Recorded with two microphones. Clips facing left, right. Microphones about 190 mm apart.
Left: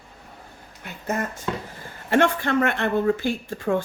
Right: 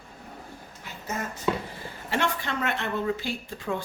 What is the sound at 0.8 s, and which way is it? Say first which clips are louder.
Speech: left 6 dB; 60° left (ahead or behind).